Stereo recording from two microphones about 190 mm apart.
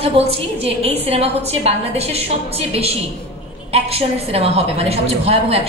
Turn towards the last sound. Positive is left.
turn(degrees=-30)  # may be behind; listen again after turning